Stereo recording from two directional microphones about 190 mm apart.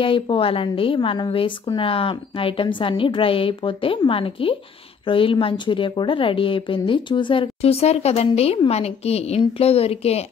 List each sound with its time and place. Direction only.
0.0 s a woman's voice: 30° left (ahead or behind)